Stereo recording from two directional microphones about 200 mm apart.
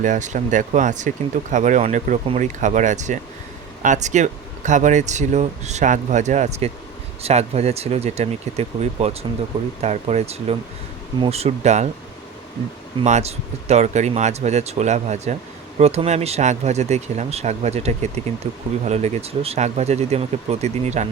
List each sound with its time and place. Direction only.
0.0 s speech: 40° right (ahead or behind)
13.0 s speech: 35° right (ahead or behind)